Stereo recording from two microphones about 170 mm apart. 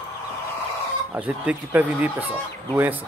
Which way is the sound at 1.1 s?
5° right (ahead or behind).